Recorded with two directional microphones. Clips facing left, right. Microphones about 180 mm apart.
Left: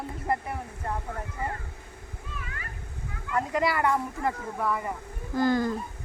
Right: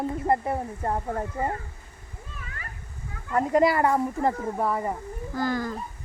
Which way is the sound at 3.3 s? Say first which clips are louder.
Right 6 dB; 35° right (ahead or behind).